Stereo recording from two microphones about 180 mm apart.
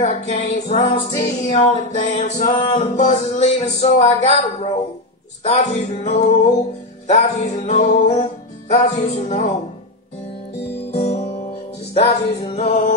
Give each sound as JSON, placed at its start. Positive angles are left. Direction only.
{"t": 0.3, "sound": "music", "side_deg": 35}
{"t": 10.9, "sound": "music", "side_deg": 35}